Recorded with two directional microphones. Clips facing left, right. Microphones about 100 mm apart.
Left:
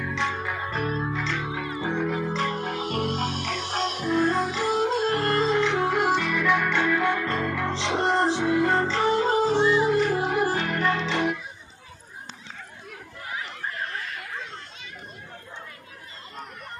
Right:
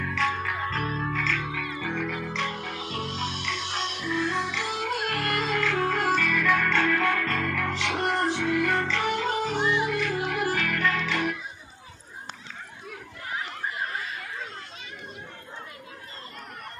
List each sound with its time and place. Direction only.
0.1 s music: 25° left (ahead or behind)